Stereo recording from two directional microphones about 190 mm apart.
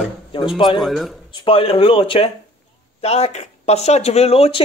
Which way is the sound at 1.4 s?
30° left (ahead or behind).